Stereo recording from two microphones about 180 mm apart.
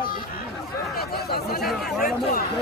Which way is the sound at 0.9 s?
60° left (ahead or behind).